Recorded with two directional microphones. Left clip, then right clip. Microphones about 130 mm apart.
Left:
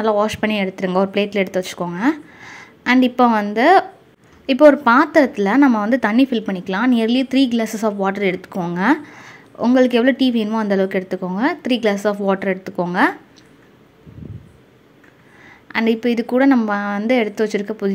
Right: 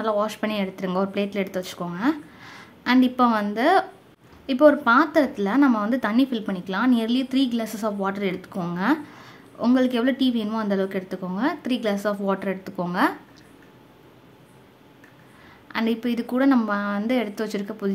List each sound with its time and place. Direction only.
0.0 s speech: 35° left (ahead or behind)
8.7 s a sound: 40° left (ahead or behind)
9.8 s speech: 35° left (ahead or behind)
15.7 s speech: 30° left (ahead or behind)